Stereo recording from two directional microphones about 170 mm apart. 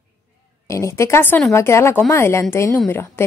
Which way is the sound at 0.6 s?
15° left (ahead or behind).